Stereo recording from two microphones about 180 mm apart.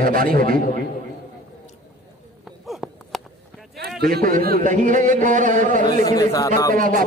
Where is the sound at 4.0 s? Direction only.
55° right (ahead or behind).